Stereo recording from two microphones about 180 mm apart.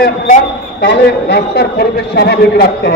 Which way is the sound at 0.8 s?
65° left (ahead or behind).